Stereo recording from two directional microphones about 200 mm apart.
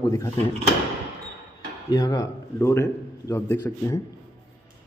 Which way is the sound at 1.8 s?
20° left (ahead or behind).